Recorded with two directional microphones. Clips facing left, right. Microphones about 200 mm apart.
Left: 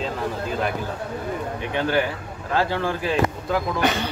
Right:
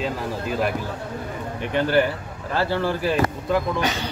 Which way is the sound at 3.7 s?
55° left (ahead or behind).